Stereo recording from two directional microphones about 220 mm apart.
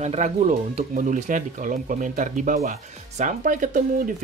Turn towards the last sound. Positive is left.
turn(degrees=-35)  # may be behind; listen again after turning